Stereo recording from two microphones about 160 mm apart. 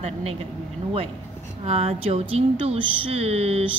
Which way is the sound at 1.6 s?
40° right (ahead or behind).